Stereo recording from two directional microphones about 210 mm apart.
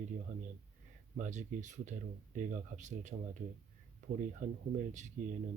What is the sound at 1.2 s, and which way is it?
Speech, 35° right (ahead or behind).